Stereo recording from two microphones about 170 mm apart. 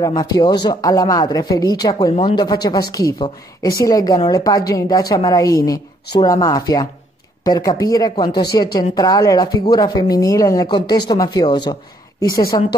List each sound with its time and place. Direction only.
0.0 s a woman's voice: 25° left (ahead or behind)